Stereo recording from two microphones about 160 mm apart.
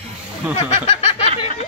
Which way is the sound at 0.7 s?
40° left (ahead or behind).